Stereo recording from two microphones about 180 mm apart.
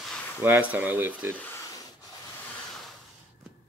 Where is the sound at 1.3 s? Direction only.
15° left (ahead or behind).